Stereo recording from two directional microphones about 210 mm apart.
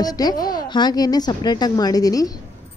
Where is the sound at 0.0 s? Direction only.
20° left (ahead or behind).